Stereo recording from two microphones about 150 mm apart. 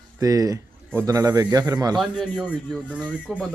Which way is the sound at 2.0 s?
5° right (ahead or behind).